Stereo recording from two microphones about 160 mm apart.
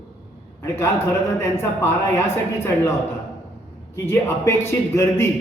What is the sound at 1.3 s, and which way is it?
A man's voice, 15° left (ahead or behind).